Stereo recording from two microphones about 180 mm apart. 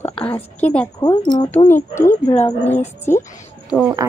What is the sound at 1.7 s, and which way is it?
Speech, 15° left (ahead or behind).